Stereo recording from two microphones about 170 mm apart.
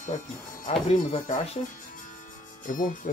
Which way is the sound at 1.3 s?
35° left (ahead or behind).